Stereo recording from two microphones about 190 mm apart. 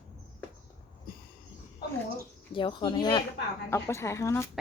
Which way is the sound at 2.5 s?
25° left (ahead or behind).